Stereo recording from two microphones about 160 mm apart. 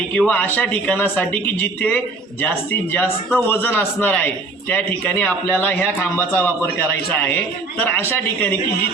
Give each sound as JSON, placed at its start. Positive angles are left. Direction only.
{"t": 0.1, "sound": "speech", "side_deg": 5}